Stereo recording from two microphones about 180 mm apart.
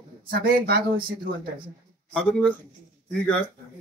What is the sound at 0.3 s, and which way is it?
Speech, 55° right (ahead or behind).